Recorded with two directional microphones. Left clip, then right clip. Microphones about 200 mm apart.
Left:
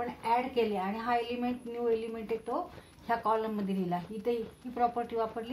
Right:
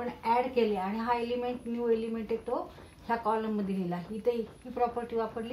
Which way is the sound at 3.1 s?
35° left (ahead or behind).